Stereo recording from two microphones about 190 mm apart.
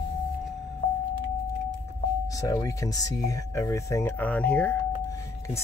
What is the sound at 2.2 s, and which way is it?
Speech, 15° left (ahead or behind).